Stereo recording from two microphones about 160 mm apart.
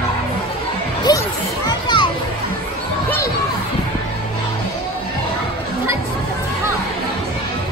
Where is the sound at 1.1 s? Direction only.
25° left (ahead or behind).